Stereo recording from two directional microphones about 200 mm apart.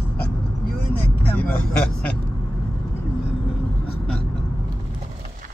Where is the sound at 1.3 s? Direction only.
10° left (ahead or behind).